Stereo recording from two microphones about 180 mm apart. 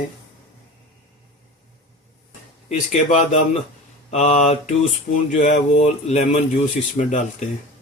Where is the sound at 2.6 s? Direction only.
40° left (ahead or behind).